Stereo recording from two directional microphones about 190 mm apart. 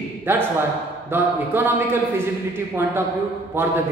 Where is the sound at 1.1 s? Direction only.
10° right (ahead or behind).